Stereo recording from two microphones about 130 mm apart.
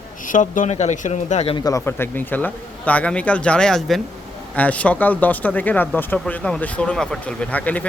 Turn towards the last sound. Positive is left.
turn(degrees=10)  # may be behind; listen again after turning